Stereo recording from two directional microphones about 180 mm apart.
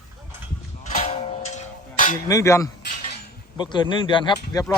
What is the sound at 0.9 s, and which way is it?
Music, 35° left (ahead or behind).